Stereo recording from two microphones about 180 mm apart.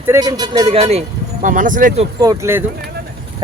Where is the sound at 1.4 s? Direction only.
45° right (ahead or behind).